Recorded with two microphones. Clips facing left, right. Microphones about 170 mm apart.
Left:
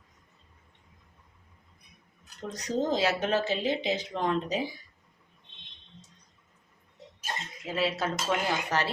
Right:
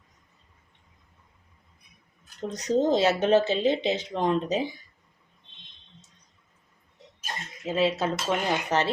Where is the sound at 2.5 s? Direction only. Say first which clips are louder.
Right 6 dB; 20° right (ahead or behind).